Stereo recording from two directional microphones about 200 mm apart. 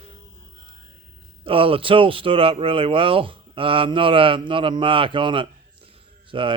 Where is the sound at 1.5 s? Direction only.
25° right (ahead or behind).